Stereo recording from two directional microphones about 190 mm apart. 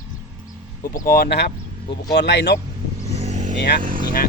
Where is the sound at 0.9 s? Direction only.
50° left (ahead or behind).